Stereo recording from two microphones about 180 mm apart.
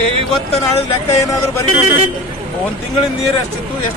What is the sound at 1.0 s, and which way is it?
Speech, 15° left (ahead or behind).